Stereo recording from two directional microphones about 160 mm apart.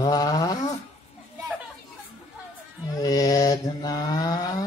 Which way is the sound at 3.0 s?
25° left (ahead or behind).